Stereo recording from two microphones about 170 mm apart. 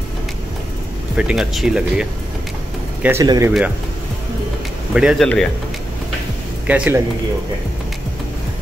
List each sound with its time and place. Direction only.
1.1 s speech: 5° right (ahead or behind)
3.0 s speech: 15° right (ahead or behind)
4.9 s speech: 5° right (ahead or behind)
6.7 s speech: 10° right (ahead or behind)